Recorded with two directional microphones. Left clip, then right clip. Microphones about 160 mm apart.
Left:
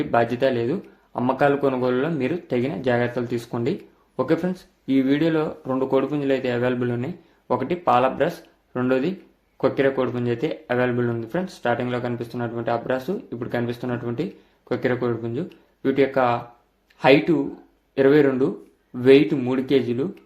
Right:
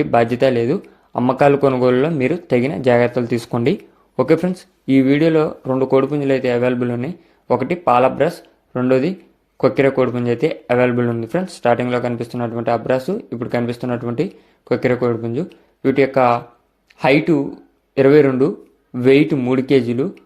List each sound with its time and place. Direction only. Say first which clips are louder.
0.0 s speech: right 6 dB; 40° right (ahead or behind)